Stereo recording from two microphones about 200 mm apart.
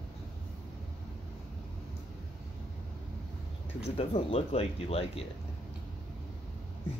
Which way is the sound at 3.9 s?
30° left (ahead or behind).